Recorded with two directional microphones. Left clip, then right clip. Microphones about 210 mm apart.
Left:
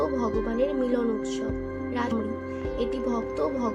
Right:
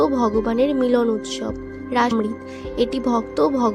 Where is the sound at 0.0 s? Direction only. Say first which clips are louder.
Right 8 dB; 40° right (ahead or behind).